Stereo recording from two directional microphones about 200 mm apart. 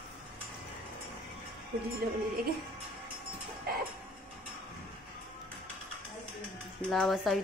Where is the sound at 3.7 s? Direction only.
50° right (ahead or behind).